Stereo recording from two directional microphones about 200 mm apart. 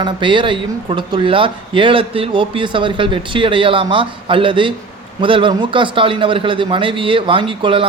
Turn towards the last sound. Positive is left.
turn(degrees=-25)  # may be behind; listen again after turning